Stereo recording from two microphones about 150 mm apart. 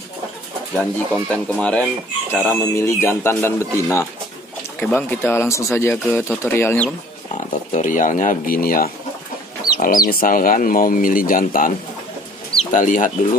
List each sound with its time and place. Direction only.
0.7 s speech: 10° left (ahead or behind)
7.7 s speech: 60° left (ahead or behind); by 8.9 s 75° left (ahead or behind)
10.0 s speech: 70° left (ahead or behind)
12.7 s speech: 60° left (ahead or behind)